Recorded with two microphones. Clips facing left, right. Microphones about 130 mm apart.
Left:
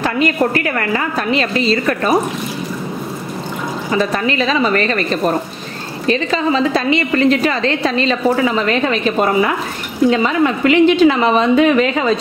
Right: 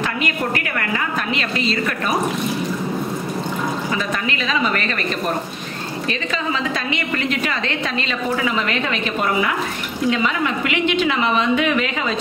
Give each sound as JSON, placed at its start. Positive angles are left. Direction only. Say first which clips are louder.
{"t": 0.0, "sound": "a woman's voice", "louder": "left 7 dB", "side_deg": 35}
{"t": 4.0, "sound": "a woman's voice", "louder": "left 7 dB", "side_deg": 35}